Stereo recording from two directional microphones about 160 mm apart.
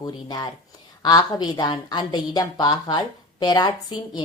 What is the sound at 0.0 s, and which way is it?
A woman's voice, 25° left (ahead or behind).